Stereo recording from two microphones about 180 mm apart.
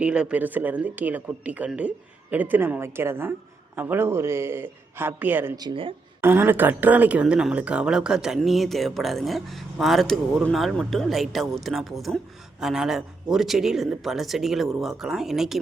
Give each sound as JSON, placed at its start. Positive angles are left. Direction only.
{"t": 0.0, "sound": "speech", "side_deg": -5}
{"t": 5.5, "sound": "speech", "side_deg": -25}
{"t": 6.2, "sound": "speech", "side_deg": -10}